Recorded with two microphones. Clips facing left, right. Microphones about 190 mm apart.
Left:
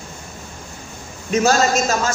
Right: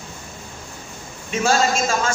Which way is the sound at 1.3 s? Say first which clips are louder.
Left 3 dB; 40° left (ahead or behind).